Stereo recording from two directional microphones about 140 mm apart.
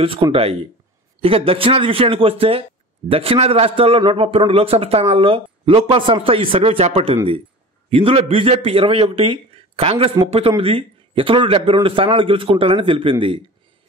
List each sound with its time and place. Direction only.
0.0 s a man's voice: 40° right (ahead or behind)